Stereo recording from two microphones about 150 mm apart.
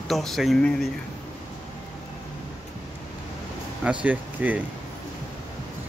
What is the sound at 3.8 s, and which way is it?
Speech, 10° right (ahead or behind).